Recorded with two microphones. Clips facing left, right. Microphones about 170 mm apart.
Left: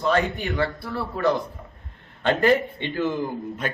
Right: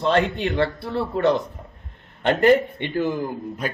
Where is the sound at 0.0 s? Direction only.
25° right (ahead or behind).